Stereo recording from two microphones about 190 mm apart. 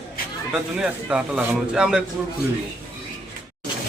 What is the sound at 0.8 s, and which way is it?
Speech, 5° right (ahead or behind).